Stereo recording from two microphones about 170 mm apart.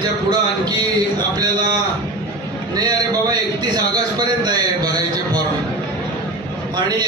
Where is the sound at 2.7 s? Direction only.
25° right (ahead or behind).